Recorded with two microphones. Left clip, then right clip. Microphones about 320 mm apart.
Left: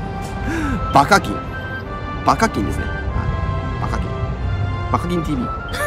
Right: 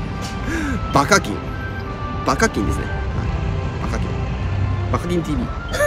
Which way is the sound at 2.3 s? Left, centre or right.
Centre.